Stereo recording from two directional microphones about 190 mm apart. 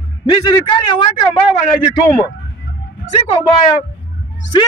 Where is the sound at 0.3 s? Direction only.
20° left (ahead or behind).